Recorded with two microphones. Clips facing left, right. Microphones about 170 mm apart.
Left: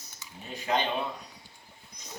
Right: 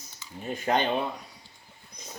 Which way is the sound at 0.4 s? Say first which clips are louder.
Right 3 dB; 50° right (ahead or behind).